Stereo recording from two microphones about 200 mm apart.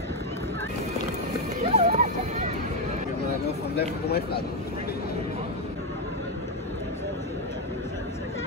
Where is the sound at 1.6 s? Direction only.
30° right (ahead or behind).